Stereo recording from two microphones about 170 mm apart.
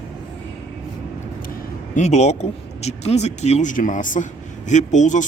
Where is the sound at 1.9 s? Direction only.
45° left (ahead or behind).